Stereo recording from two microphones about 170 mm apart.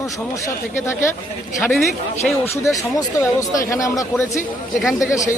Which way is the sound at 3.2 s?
20° left (ahead or behind).